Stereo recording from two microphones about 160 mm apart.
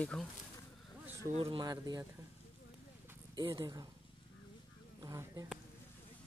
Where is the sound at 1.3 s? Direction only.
35° right (ahead or behind).